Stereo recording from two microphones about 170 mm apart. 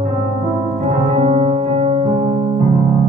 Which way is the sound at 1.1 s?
40° right (ahead or behind).